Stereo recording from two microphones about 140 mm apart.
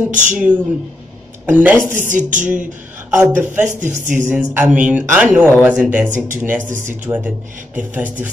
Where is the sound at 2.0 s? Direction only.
65° right (ahead or behind).